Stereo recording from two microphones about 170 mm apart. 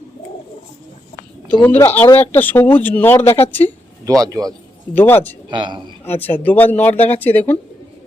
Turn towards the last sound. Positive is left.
turn(degrees=10)  # may be behind; listen again after turning